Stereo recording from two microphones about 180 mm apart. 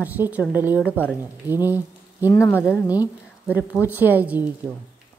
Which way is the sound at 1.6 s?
10° right (ahead or behind).